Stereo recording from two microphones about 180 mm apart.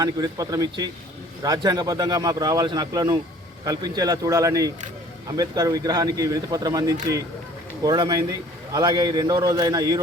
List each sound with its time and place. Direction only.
0.0 s a man's voice: 20° right (ahead or behind)